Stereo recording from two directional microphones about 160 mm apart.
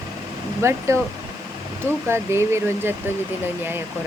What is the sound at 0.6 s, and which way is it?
Speech, 15° right (ahead or behind).